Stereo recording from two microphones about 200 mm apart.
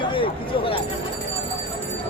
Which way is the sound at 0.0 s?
25° left (ahead or behind).